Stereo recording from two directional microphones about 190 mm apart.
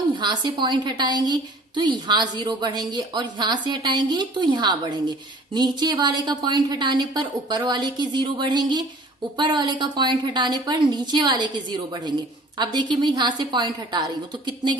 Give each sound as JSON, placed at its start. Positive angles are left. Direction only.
{"t": 0.2, "sound": "a woman's voice", "side_deg": -25}